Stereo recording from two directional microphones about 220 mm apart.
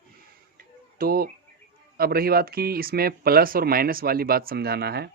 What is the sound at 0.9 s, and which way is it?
Speech, 40° right (ahead or behind).